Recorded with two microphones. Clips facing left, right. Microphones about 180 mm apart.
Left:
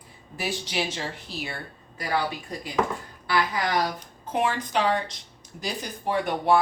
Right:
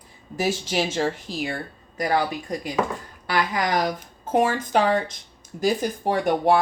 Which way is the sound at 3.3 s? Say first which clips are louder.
Right 2 dB; 45° right (ahead or behind).